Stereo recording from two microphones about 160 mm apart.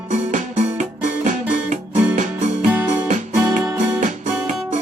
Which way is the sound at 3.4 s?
20° right (ahead or behind).